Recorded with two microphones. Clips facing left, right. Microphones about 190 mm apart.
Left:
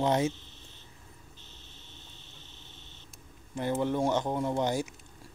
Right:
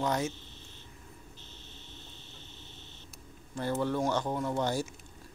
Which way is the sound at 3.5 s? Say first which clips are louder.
Left 2 dB; 20° left (ahead or behind).